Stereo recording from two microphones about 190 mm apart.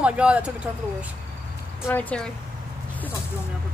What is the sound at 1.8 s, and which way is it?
Speech, 5° left (ahead or behind).